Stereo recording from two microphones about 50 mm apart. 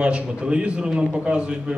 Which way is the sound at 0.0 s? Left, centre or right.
Right.